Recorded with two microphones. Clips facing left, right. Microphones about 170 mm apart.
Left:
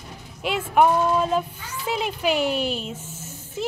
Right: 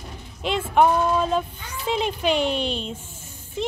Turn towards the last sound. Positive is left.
turn(degrees=5)  # may be behind; listen again after turning